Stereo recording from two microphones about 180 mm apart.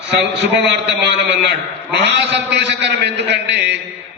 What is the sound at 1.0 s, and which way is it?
A man's voice, 75° right (ahead or behind).